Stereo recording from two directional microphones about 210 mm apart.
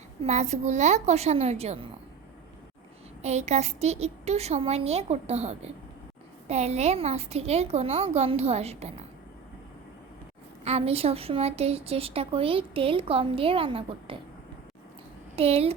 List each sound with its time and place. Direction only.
0.3 s a woman's voice: 30° right (ahead or behind)
3.2 s a woman's voice: 30° right (ahead or behind)
10.6 s a woman's voice: 30° right (ahead or behind)
15.4 s a woman's voice: 30° right (ahead or behind)